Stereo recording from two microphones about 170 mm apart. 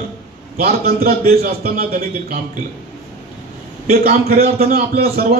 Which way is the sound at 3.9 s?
65° right (ahead or behind).